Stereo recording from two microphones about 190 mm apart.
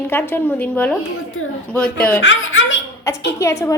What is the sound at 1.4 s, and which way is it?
Speech, 90° left.